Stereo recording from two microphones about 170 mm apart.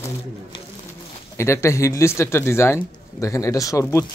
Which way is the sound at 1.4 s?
15° left (ahead or behind).